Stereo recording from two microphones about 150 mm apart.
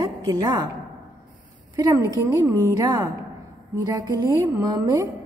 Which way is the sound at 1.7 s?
25° right (ahead or behind).